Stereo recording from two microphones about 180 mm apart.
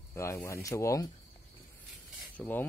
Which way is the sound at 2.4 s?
10° left (ahead or behind).